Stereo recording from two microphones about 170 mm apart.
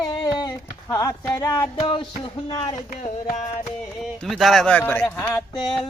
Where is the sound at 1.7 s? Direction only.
30° left (ahead or behind).